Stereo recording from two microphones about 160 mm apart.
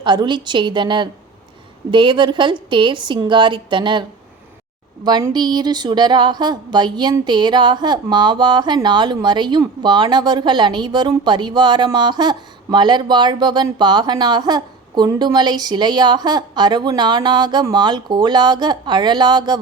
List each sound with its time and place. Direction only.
0.0 s a woman's voice: 30° right (ahead or behind)
5.0 s a woman's voice: 25° right (ahead or behind)